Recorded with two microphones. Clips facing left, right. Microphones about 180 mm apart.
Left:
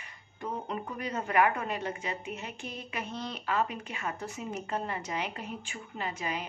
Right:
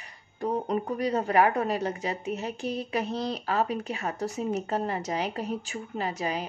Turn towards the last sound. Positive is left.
turn(degrees=-40)  # may be behind; listen again after turning